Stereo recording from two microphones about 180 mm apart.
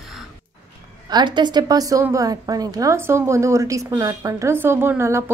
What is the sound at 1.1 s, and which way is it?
A woman's voice, 25° right (ahead or behind).